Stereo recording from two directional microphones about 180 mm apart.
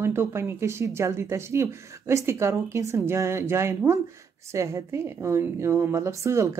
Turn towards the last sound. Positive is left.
turn(degrees=-15)  # may be behind; listen again after turning